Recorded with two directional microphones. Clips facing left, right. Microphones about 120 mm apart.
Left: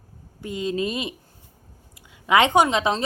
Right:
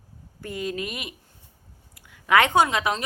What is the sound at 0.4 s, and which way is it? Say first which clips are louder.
A woman's voice: left 4 dB; 20° left (ahead or behind).